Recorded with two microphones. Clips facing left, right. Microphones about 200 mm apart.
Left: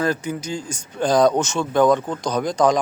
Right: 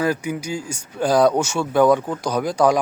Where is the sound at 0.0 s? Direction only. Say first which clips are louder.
Right 1 dB; 10° right (ahead or behind).